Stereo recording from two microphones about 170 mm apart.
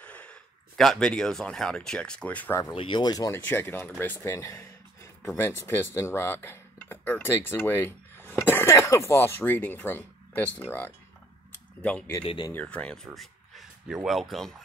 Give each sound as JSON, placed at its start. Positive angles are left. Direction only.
{"t": 0.0, "sound": "speech", "side_deg": 10}
{"t": 2.7, "sound": "speech", "side_deg": 30}
{"t": 3.3, "sound": "speech", "side_deg": 10}
{"t": 12.2, "sound": "speech", "side_deg": 25}
{"t": 12.5, "sound": "speech", "side_deg": 5}